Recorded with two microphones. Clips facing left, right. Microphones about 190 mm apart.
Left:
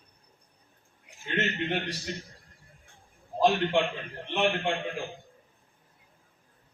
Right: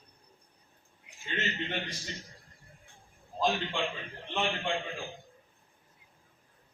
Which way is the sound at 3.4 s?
65° left (ahead or behind).